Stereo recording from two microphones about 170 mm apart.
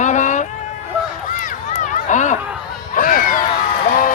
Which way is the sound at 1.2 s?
50° left (ahead or behind).